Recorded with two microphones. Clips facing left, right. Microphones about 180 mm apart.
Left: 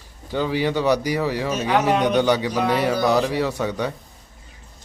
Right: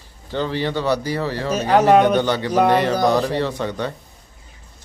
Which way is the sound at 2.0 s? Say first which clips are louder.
Even; 10° left (ahead or behind).